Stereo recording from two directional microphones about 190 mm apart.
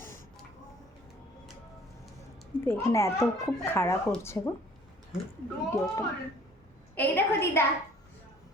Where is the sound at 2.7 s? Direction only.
15° left (ahead or behind).